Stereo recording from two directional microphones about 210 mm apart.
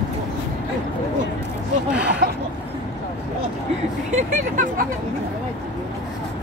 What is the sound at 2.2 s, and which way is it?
Vehicle, 45° right (ahead or behind).